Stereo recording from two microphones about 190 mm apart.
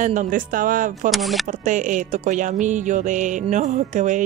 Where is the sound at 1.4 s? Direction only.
40° right (ahead or behind).